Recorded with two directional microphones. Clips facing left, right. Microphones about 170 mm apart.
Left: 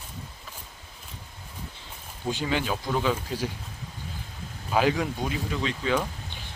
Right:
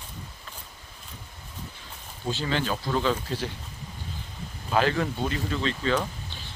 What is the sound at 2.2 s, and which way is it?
Speech, 10° left (ahead or behind).